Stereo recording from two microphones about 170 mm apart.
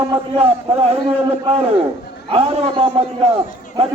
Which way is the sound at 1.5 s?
35° right (ahead or behind).